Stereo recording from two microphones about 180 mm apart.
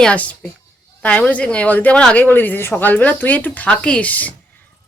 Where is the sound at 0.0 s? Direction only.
5° left (ahead or behind).